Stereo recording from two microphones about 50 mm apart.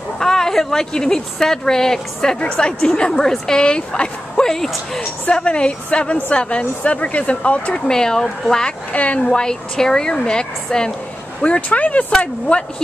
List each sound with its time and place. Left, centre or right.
0.2 s speech: centre
5.3 s speech: centre
7.9 s speech: centre
8.9 s speech: left
9.3 s speech: centre
11.4 s speech: left